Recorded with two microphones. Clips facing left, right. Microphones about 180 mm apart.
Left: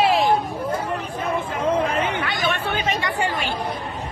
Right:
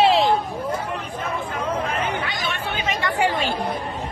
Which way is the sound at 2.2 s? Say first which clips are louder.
Left 3 dB; 60° left (ahead or behind).